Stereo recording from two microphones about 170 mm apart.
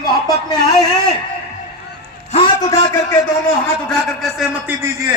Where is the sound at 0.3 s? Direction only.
25° left (ahead or behind).